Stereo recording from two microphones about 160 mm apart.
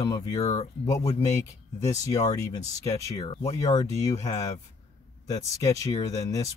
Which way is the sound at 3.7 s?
20° left (ahead or behind).